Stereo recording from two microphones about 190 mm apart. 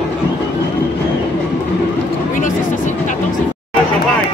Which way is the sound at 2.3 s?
45° left (ahead or behind).